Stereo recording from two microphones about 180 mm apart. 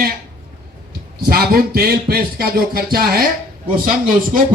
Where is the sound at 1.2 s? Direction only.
55° right (ahead or behind).